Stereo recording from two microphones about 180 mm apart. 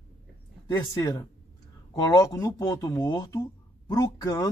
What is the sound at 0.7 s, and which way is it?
Speech, 15° left (ahead or behind).